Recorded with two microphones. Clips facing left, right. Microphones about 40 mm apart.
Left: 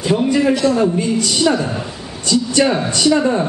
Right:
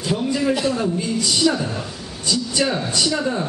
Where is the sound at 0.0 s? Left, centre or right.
Left.